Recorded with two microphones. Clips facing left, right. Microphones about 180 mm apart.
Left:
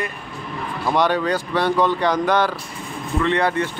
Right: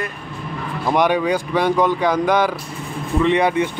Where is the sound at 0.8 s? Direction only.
15° right (ahead or behind).